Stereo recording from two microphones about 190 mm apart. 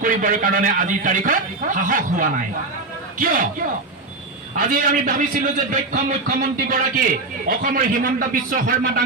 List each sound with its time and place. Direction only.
0.0 s a man's voice: 45° right (ahead or behind)
4.5 s a man's voice: 45° right (ahead or behind)